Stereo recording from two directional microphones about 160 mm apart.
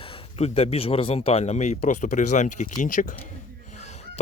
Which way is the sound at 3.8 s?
45° left (ahead or behind).